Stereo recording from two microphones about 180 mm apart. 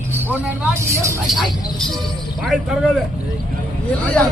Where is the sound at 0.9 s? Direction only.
15° right (ahead or behind).